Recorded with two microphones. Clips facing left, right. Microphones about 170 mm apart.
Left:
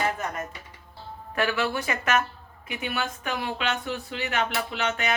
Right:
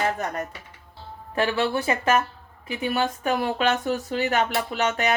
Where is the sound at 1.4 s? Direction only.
30° right (ahead or behind).